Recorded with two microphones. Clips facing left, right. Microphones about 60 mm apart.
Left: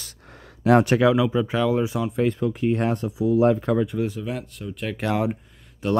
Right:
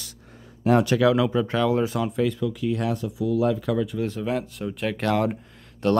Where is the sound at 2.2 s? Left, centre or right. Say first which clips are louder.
Left 4 dB; left.